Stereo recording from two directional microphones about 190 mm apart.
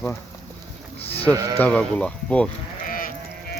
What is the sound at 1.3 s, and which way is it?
Speech, 20° right (ahead or behind).